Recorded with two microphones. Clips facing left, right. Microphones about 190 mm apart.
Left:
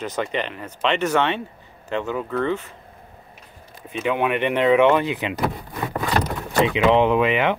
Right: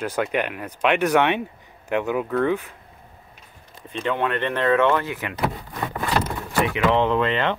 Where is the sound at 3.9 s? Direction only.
10° left (ahead or behind).